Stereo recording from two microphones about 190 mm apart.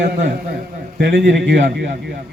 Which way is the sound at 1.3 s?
65° right (ahead or behind).